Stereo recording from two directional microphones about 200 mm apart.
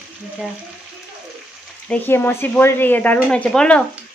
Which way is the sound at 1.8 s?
10° left (ahead or behind).